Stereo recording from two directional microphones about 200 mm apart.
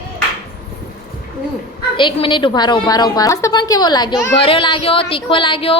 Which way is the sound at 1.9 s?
25° left (ahead or behind).